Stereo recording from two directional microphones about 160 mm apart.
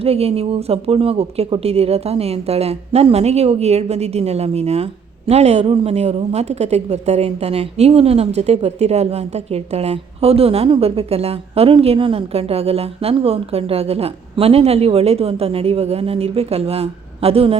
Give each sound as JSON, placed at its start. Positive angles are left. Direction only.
{"t": 0.0, "sound": "a woman's voice", "side_deg": -40}